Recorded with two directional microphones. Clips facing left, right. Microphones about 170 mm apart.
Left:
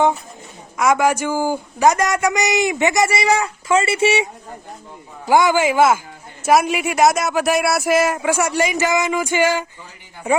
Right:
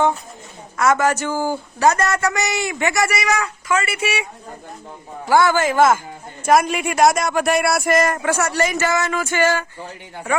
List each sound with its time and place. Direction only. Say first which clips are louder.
0.8 s a man's voice: left 1 dB; 10° left (ahead or behind)
5.3 s a man's voice: left 1 dB; 15° left (ahead or behind)